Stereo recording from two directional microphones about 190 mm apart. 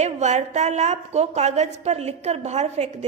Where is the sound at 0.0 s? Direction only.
35° right (ahead or behind).